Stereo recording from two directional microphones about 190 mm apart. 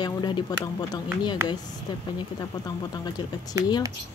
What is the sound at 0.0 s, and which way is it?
Speech, 20° left (ahead or behind).